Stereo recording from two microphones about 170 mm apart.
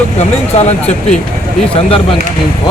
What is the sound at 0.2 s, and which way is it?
Speech, 40° left (ahead or behind).